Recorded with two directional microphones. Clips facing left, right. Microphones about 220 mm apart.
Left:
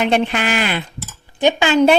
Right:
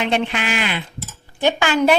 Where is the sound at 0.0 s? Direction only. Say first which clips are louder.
Left 4 dB; 40° left (ahead or behind).